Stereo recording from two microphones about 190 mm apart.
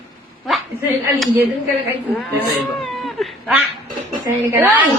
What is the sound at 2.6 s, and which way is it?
Cat, centre (ahead or behind).